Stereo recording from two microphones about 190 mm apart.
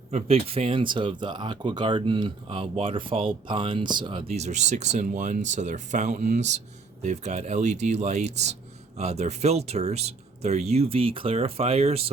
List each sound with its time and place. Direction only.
0.1 s speech: 35° right (ahead or behind)